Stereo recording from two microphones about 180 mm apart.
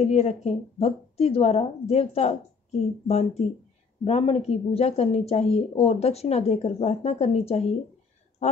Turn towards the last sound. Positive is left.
turn(degrees=35)  # may be behind; listen again after turning